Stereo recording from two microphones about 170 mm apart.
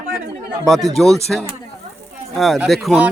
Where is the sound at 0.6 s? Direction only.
Centre (ahead or behind).